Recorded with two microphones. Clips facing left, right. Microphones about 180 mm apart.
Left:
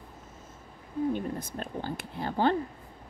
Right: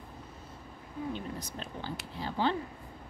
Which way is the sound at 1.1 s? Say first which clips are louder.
Left 6 dB; 50° left (ahead or behind).